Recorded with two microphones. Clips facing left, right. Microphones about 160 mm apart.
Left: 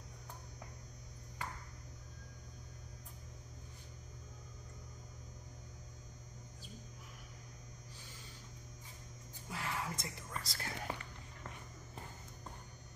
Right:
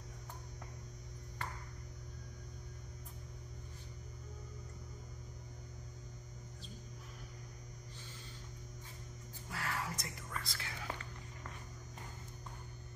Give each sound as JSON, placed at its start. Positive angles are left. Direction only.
{"t": 9.5, "sound": "whispering", "side_deg": 20}
{"t": 10.4, "sound": "speech", "side_deg": 40}